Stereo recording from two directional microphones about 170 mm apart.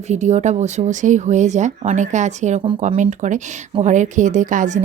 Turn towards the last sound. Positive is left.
turn(degrees=-50)  # may be behind; listen again after turning